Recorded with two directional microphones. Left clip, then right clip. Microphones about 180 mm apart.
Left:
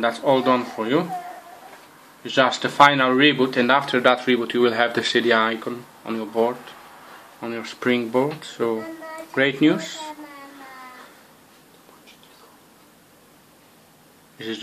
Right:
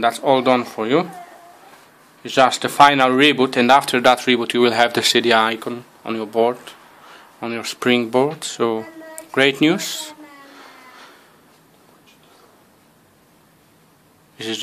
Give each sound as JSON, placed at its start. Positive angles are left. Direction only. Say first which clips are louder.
{"t": 0.0, "sound": "speech", "louder": "right 3 dB", "side_deg": -60}
{"t": 2.2, "sound": "speech", "louder": "right 4 dB", "side_deg": -60}